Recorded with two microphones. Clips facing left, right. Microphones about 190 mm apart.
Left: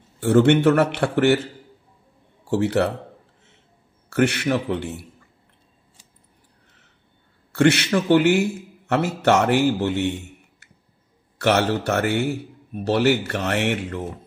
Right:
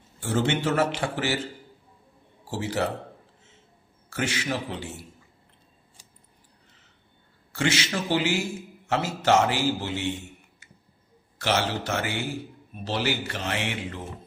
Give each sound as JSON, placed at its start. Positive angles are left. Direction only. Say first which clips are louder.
{"t": 0.2, "sound": "a man's voice", "louder": "left 10 dB", "side_deg": 60}
{"t": 2.5, "sound": "a man's voice", "louder": "left 8 dB", "side_deg": 60}
{"t": 4.1, "sound": "a man's voice", "louder": "left 9 dB", "side_deg": 60}
{"t": 7.5, "sound": "a man's voice", "louder": "left 9 dB", "side_deg": 60}
{"t": 11.3, "sound": "a man's voice", "louder": "left 7 dB", "side_deg": 60}